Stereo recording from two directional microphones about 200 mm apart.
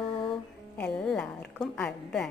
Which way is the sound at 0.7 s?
5° left (ahead or behind).